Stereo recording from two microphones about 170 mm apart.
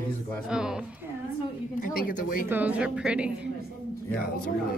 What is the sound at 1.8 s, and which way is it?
Speech, 55° left (ahead or behind).